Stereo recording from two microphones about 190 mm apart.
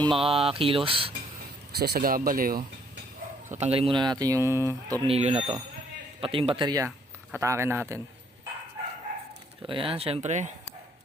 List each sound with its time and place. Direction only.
0.0 s speech: 30° right (ahead or behind)
1.8 s speech: 50° right (ahead or behind)
3.5 s speech: 35° right (ahead or behind); by 4.9 s 15° right (ahead or behind)
5.0 s speech: 30° right (ahead or behind); by 8.0 s 15° right (ahead or behind)
9.6 s speech: 30° right (ahead or behind)